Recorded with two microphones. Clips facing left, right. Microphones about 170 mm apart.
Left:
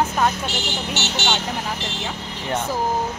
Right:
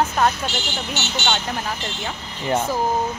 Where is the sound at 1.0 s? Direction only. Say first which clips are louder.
Left 1 dB; 75° left (ahead or behind).